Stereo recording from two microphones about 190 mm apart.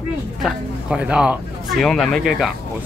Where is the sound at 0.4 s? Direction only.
5° right (ahead or behind).